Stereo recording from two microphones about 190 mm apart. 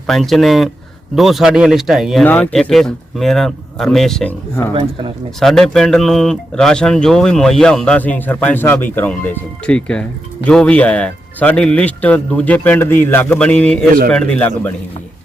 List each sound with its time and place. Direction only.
0.1 s speech: centre (ahead or behind)
4.7 s speech: 30° right (ahead or behind)
5.4 s speech: centre (ahead or behind)